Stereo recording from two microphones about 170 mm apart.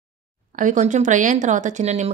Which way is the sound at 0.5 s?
50° right (ahead or behind).